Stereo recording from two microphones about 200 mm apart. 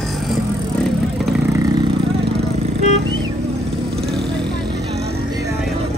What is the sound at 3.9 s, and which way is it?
Vehicle, centre (ahead or behind).